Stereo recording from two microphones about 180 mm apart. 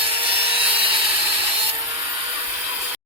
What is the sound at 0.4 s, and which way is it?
Wood, 30° right (ahead or behind).